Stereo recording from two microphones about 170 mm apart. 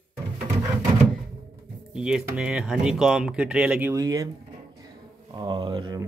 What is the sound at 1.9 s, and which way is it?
Music, 5° right (ahead or behind).